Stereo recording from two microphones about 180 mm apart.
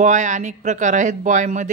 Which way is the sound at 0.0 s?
45° right (ahead or behind).